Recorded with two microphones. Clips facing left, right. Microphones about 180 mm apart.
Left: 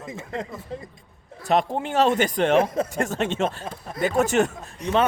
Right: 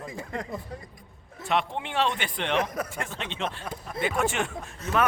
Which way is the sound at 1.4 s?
40° left (ahead or behind).